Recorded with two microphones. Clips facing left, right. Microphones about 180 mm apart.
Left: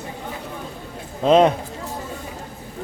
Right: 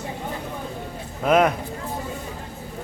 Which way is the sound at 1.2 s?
25° left (ahead or behind).